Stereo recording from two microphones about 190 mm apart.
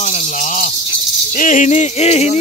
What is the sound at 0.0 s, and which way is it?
Snake, 40° left (ahead or behind).